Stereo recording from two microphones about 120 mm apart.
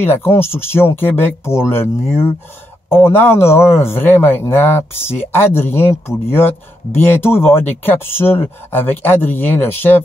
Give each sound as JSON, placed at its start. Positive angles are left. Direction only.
{"t": 0.0, "sound": "speech", "side_deg": 20}